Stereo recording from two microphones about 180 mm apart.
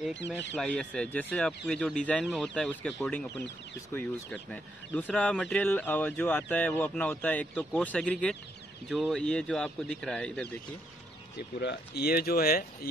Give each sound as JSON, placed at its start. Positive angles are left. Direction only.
{"t": 0.6, "sound": "speech", "side_deg": 5}
{"t": 11.6, "sound": "speech", "side_deg": 70}